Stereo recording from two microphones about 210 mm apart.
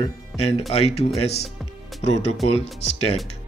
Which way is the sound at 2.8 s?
25° left (ahead or behind).